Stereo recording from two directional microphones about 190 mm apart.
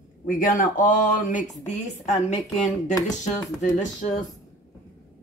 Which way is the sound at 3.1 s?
40° left (ahead or behind).